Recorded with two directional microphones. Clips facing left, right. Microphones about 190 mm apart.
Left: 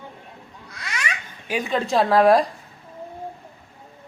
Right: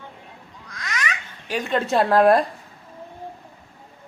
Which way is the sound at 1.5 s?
5° left (ahead or behind).